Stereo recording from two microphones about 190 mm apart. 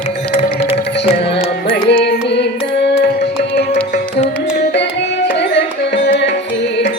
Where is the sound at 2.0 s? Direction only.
60° left (ahead or behind).